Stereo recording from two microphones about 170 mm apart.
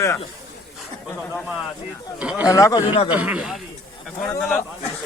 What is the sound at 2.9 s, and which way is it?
Speech, 35° left (ahead or behind).